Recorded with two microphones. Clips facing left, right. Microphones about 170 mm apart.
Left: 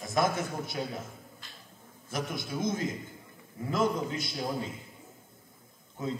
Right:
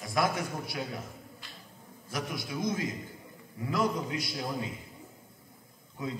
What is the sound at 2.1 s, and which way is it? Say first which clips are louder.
A man's voice: left 1 dB; 25° left (ahead or behind).